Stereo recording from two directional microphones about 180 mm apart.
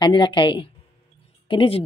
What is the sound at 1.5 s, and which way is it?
Speech, 30° left (ahead or behind).